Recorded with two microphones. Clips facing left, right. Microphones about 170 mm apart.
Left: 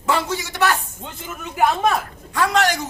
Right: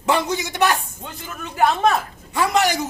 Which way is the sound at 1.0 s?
15° left (ahead or behind).